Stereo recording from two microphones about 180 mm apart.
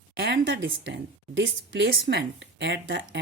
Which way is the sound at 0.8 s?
75° right (ahead or behind).